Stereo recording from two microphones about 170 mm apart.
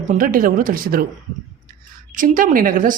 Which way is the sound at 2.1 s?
50° right (ahead or behind).